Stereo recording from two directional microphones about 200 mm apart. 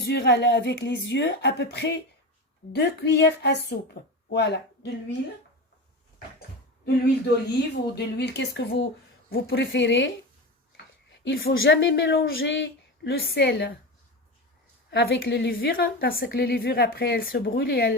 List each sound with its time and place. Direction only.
0.0 s a woman's voice: 55° left (ahead or behind)
7.4 s a woman's voice: 55° left (ahead or behind)
11.2 s a woman's voice: 55° left (ahead or behind)
14.8 s a woman's voice: 55° left (ahead or behind)